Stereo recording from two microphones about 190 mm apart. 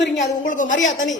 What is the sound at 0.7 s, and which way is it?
Speech, 85° left.